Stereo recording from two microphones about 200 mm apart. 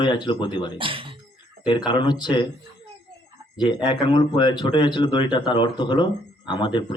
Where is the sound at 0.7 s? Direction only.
25° right (ahead or behind).